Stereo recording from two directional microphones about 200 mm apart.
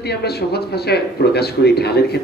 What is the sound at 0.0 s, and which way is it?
Speech, 55° left (ahead or behind).